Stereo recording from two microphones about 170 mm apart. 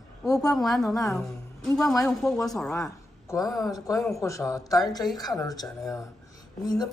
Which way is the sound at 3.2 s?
20° left (ahead or behind).